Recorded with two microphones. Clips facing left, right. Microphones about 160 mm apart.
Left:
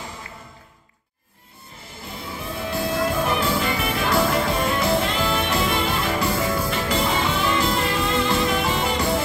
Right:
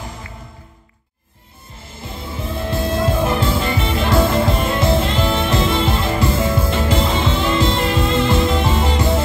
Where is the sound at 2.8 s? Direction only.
25° right (ahead or behind).